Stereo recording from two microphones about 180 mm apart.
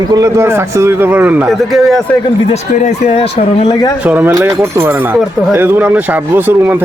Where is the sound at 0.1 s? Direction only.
15° right (ahead or behind); by 2.0 s centre (ahead or behind).